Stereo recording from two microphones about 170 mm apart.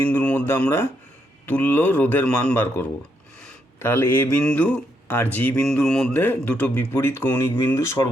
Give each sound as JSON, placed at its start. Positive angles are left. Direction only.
{"t": 0.0, "sound": "speech", "side_deg": 10}